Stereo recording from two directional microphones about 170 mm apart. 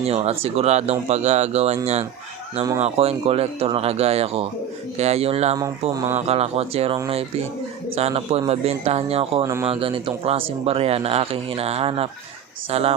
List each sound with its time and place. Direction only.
0.0 s speech: 35° right (ahead or behind)
9.4 s speech: 15° right (ahead or behind)
9.6 s speech: 30° right (ahead or behind)